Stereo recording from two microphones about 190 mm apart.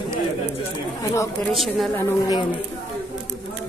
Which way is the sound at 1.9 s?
15° left (ahead or behind).